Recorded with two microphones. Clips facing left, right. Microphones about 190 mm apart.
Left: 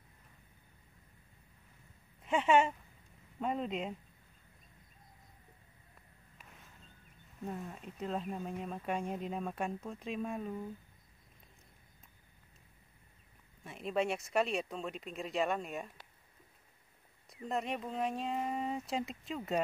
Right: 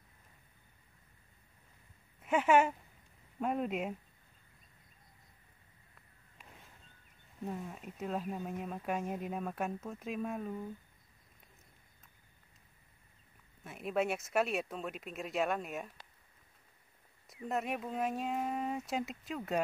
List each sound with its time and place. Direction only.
2.2 s speech: 5° right (ahead or behind)
7.4 s speech: 5° right (ahead or behind)
13.7 s speech: 5° right (ahead or behind)
17.3 s speech: 5° right (ahead or behind)